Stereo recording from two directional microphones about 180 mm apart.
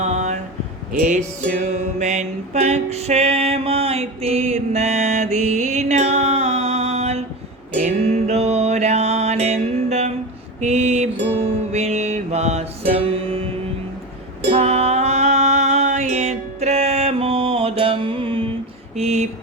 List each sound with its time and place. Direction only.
0.0 s a sound: 40° right (ahead or behind)
1.4 s music: 45° right (ahead or behind)
10.6 s mantra: 40° right (ahead or behind)
11.7 s music: 35° right (ahead or behind)
14.5 s music: 35° right (ahead or behind)
18.9 s a sound: 35° right (ahead or behind)